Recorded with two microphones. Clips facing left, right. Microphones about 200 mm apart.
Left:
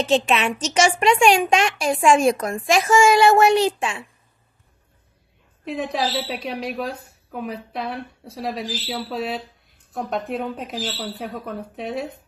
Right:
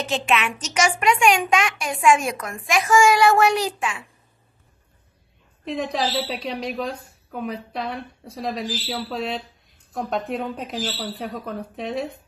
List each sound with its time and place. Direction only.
0.0 s a woman's voice: 30° left (ahead or behind)
5.7 s a woman's voice: 5° left (ahead or behind)